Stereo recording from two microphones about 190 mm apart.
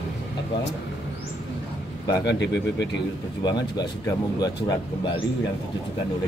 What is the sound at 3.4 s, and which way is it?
Speech, 20° left (ahead or behind).